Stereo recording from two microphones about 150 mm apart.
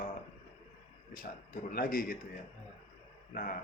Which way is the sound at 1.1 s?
70° left (ahead or behind).